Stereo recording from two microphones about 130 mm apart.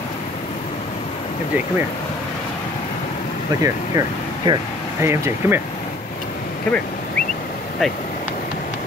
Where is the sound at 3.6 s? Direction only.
25° right (ahead or behind).